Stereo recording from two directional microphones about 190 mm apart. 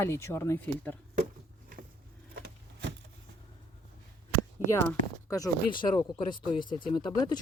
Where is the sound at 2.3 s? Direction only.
60° right (ahead or behind).